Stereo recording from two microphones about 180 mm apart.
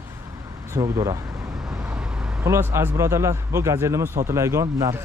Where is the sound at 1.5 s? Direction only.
Centre (ahead or behind).